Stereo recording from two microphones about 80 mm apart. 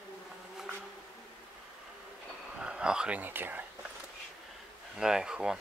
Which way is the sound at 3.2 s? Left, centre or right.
Right.